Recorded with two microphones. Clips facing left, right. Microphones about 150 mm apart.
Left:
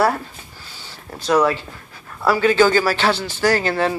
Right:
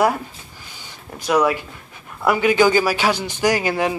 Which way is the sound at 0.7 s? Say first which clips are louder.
Left 1 dB; 15° right (ahead or behind).